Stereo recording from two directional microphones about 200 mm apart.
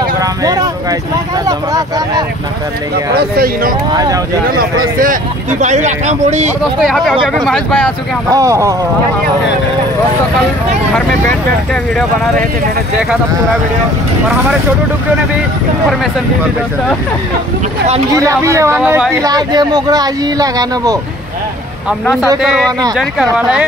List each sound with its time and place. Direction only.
0.2 s vehicle: 15° right (ahead or behind)
3.9 s speech: 20° right (ahead or behind)
4.9 s speech: 40° right (ahead or behind)
6.6 s speech: centre (ahead or behind)
8.3 s speech: 15° right (ahead or behind)
11.0 s speech: 5° left (ahead or behind)
18.1 s speech: 15° right (ahead or behind)
19.2 s speech: 20° right (ahead or behind)
22.0 s speech: centre (ahead or behind)
23.3 s speech: 5° right (ahead or behind)